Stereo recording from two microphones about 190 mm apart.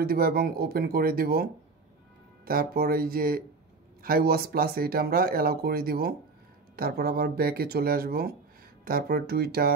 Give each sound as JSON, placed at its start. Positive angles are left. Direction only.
{"t": 0.0, "sound": "speech", "side_deg": -50}